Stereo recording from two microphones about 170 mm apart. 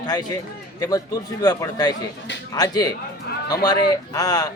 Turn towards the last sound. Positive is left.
turn(degrees=20)  # may be behind; listen again after turning